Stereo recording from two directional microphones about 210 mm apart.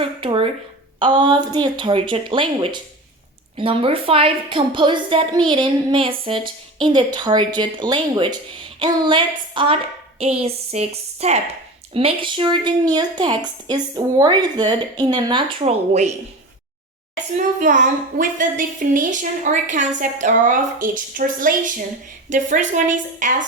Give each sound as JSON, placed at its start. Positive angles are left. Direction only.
{"t": 0.0, "sound": "a woman's voice", "side_deg": -25}
{"t": 17.3, "sound": "a woman's voice", "side_deg": -35}